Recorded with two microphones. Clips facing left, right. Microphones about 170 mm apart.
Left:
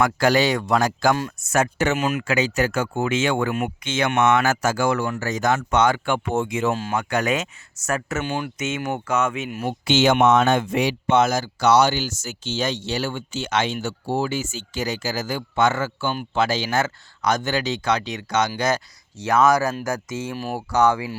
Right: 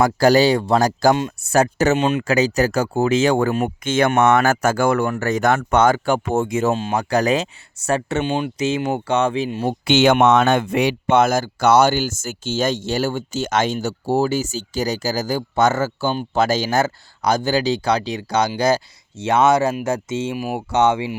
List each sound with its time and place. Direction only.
0.0 s speech: 35° right (ahead or behind)
1.1 s speech: 20° right (ahead or behind)
1.5 s speech: 40° right (ahead or behind)
3.8 s speech: 50° right (ahead or behind)
6.7 s speech: 25° right (ahead or behind)
6.9 s speech: 35° right (ahead or behind)
9.8 s speech: 60° right (ahead or behind); by 20.3 s 25° right (ahead or behind)
20.3 s speech: 10° right (ahead or behind)
20.6 s speech: 25° right (ahead or behind)